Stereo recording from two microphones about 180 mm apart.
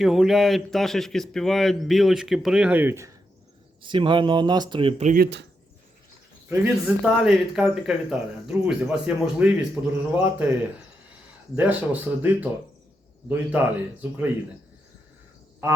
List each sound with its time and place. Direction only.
0.0 s speech: centre (ahead or behind)
3.8 s speech: 25° right (ahead or behind)
6.5 s speech: 5° right (ahead or behind)
11.5 s speech: 10° right (ahead or behind)